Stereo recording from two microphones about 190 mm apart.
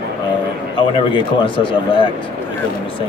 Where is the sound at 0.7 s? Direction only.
25° left (ahead or behind).